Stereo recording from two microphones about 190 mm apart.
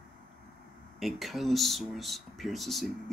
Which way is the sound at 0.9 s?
Centre (ahead or behind).